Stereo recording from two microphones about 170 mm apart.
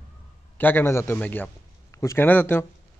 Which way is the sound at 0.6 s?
10° left (ahead or behind).